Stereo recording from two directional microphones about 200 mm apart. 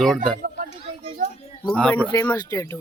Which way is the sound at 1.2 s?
45° right (ahead or behind).